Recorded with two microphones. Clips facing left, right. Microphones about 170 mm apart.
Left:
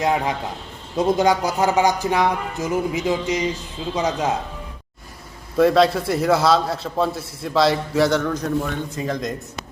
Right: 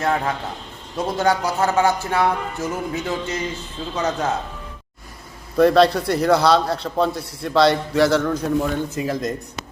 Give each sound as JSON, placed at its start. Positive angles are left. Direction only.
{"t": 0.0, "sound": "speech", "side_deg": 15}
{"t": 5.5, "sound": "a man's voice", "side_deg": 0}